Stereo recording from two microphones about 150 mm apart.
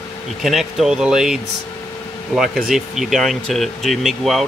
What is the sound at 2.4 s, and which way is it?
Speech, centre (ahead or behind).